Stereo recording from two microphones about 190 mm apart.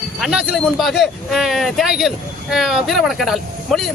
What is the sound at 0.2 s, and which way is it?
Speech, 5° right (ahead or behind).